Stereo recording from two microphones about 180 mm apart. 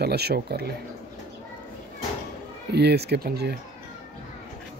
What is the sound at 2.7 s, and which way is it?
Speech, 65° right (ahead or behind).